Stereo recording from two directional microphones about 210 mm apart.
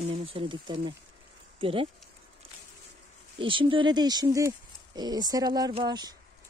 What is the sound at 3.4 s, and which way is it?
Speech, 25° right (ahead or behind).